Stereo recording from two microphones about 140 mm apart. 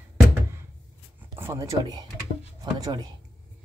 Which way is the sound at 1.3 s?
20° right (ahead or behind).